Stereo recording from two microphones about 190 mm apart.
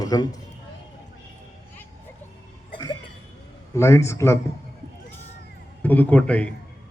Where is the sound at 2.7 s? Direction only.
20° left (ahead or behind).